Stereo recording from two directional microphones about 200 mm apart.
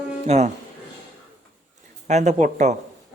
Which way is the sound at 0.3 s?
35° right (ahead or behind).